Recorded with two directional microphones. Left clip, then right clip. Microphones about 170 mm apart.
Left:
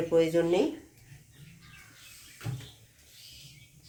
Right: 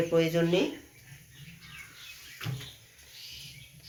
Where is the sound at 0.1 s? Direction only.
70° left (ahead or behind).